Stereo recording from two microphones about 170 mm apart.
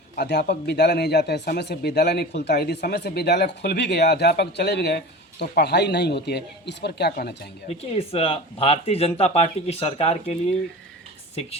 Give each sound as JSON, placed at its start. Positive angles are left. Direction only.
{"t": 0.2, "sound": "speech", "side_deg": 80}
{"t": 7.7, "sound": "speech", "side_deg": 35}